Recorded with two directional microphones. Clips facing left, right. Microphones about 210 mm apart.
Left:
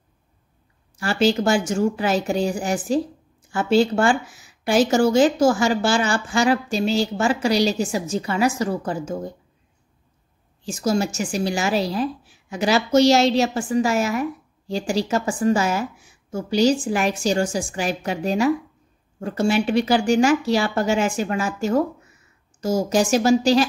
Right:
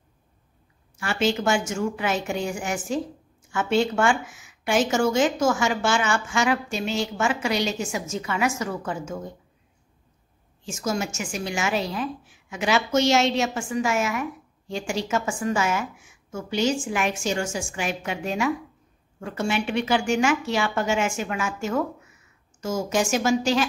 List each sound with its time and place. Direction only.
0.9 s speech: 35° left (ahead or behind)
10.6 s speech: 35° left (ahead or behind)